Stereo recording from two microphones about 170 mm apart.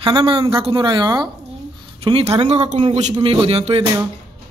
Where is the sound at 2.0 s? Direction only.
35° right (ahead or behind).